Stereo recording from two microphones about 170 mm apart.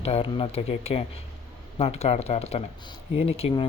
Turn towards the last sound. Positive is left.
turn(degrees=35)  # may be behind; listen again after turning